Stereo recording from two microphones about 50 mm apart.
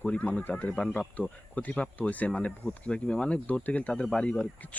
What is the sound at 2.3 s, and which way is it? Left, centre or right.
Speech, left.